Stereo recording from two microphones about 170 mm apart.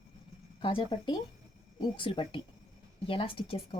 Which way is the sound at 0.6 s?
30° left (ahead or behind).